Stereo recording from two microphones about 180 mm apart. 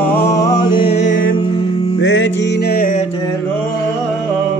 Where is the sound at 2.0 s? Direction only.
90° left; by 2.9 s 55° left (ahead or behind).